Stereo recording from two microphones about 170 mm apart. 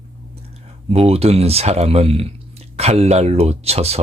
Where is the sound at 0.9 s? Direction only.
35° right (ahead or behind).